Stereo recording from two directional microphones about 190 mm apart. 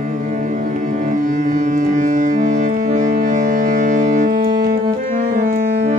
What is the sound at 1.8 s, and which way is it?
Music, 40° right (ahead or behind).